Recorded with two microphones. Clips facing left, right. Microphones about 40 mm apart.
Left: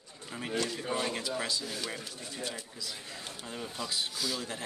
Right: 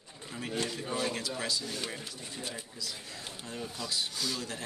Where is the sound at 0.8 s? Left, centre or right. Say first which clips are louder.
Left 1 dB; centre.